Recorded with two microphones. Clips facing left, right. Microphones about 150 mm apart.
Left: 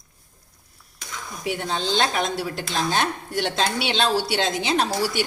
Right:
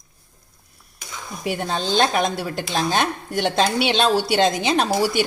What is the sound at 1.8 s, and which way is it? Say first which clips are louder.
Speech: right 4 dB; 50° right (ahead or behind).